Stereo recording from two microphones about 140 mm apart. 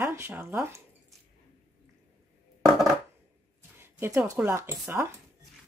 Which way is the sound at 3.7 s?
15° right (ahead or behind).